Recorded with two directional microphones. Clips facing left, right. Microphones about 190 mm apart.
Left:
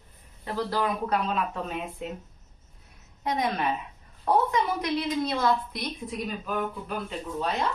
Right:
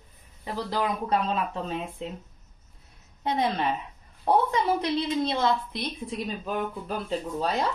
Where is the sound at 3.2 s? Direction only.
30° right (ahead or behind).